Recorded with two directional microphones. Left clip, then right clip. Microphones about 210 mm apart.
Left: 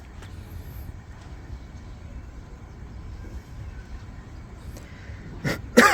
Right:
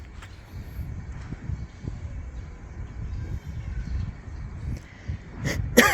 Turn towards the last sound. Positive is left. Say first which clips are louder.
# left 2 dB
turn(degrees=20)  # may be behind; listen again after turning